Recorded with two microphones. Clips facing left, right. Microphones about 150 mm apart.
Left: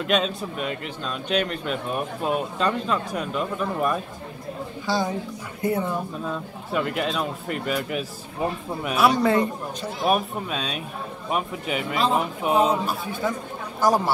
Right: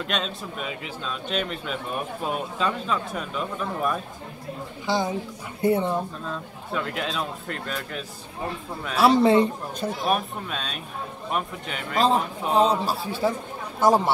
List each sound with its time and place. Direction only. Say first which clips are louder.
0.0 s a man's voice: left 6 dB; centre (ahead or behind)
4.9 s speech: even; 20° right (ahead or behind)
6.2 s a man's voice: left 3 dB; 5° left (ahead or behind)
8.9 s speech: right 2 dB; 25° right (ahead or behind)
10.0 s a man's voice: left 5 dB; 5° left (ahead or behind)
12.8 s a man's voice: right 1 dB; 30° right (ahead or behind)